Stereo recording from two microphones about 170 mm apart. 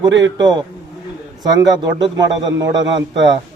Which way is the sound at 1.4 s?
25° right (ahead or behind).